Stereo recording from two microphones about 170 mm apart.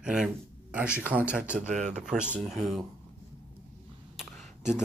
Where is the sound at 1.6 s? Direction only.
45° right (ahead or behind).